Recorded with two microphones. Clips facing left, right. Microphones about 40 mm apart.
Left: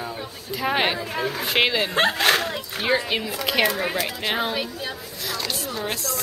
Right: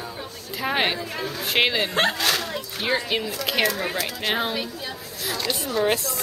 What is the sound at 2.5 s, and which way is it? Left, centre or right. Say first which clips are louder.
Speech: left 2 dB; centre.